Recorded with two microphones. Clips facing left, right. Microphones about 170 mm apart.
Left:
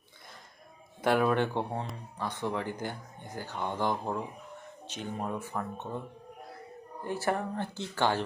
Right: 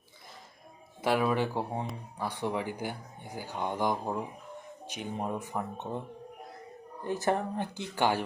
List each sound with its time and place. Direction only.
1.0 s speech: centre (ahead or behind); by 6.0 s 20° right (ahead or behind)
7.0 s speech: 20° right (ahead or behind)